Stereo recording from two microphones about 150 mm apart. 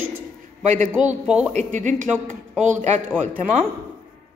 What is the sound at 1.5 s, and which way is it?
A woman's voice, 55° right (ahead or behind).